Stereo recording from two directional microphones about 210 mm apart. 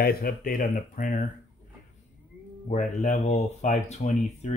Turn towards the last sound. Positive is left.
turn(degrees=30)  # may be behind; listen again after turning